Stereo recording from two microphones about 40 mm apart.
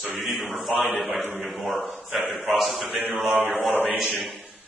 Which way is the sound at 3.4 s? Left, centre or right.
Right.